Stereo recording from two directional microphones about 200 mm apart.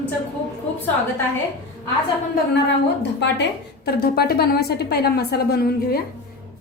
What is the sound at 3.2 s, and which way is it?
A woman's voice, 55° left (ahead or behind).